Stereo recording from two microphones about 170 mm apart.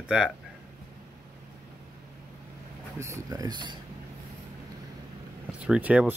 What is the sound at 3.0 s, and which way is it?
Speech, 15° right (ahead or behind).